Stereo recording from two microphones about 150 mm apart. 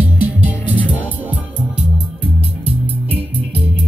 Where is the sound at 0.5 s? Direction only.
10° left (ahead or behind).